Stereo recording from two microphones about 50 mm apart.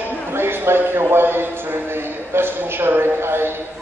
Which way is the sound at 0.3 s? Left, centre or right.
Right.